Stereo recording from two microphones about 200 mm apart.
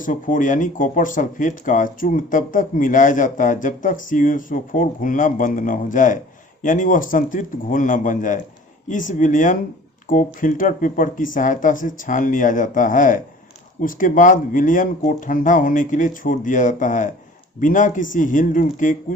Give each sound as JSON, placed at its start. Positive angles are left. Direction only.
{"t": 0.0, "sound": "speech", "side_deg": 40}